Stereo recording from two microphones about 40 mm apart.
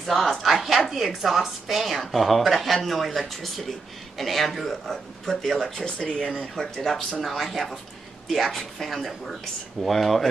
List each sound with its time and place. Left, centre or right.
0.0 s a woman's voice: centre
5.9 s speech: left
6.5 s a woman's voice: centre